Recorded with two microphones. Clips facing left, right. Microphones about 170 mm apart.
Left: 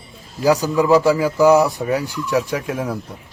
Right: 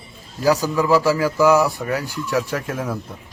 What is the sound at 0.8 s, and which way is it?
Speech, 20° left (ahead or behind).